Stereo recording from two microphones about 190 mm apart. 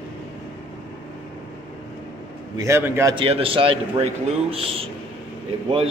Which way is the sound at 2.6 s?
15° right (ahead or behind).